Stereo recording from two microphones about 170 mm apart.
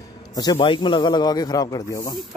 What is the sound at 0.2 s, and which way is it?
A man's voice, 25° left (ahead or behind).